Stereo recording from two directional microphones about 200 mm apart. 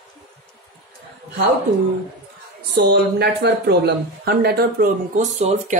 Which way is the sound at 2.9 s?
55° right (ahead or behind).